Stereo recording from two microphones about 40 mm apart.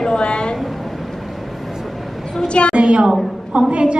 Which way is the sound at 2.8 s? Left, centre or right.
Right.